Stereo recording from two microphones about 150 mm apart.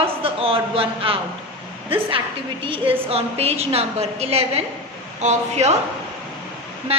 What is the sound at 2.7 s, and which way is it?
A woman's voice, 40° right (ahead or behind).